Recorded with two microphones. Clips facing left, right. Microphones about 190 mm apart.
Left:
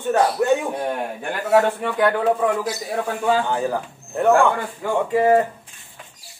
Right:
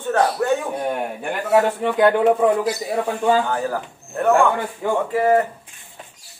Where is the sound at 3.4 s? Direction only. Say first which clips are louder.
Left 1 dB; 20° left (ahead or behind).